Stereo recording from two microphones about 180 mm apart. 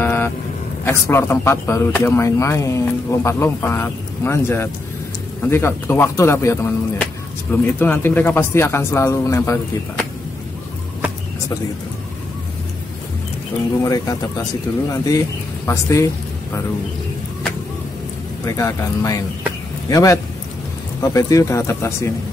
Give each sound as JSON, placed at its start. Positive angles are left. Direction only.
{"t": 0.0, "sound": "vehicle", "side_deg": 15}
{"t": 0.8, "sound": "speech", "side_deg": 15}
{"t": 13.8, "sound": "a man's voice", "side_deg": 20}
{"t": 18.4, "sound": "a man's voice", "side_deg": 20}